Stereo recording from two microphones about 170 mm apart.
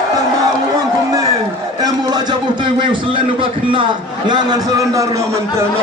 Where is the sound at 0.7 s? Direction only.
20° right (ahead or behind).